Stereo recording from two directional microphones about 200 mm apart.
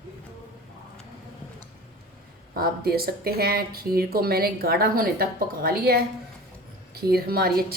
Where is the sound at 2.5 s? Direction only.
50° right (ahead or behind).